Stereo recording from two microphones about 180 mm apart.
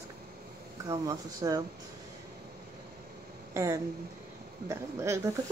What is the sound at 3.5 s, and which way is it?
Speech, 15° right (ahead or behind).